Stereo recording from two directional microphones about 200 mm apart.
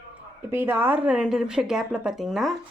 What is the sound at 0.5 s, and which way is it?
A woman's voice, 10° right (ahead or behind).